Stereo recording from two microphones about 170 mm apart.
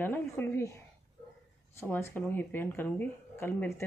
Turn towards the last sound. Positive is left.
turn(degrees=10)  # may be behind; listen again after turning